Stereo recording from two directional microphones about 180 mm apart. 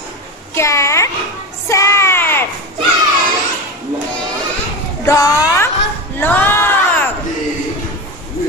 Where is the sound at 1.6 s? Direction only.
15° left (ahead or behind).